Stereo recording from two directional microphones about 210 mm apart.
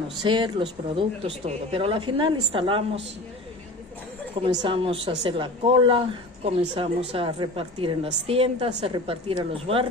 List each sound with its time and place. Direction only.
0.2 s a woman's voice: 20° right (ahead or behind)
4.6 s a woman's voice: 25° right (ahead or behind)